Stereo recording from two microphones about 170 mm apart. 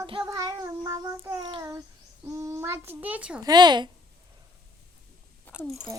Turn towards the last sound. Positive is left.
turn(degrees=-5)  # may be behind; listen again after turning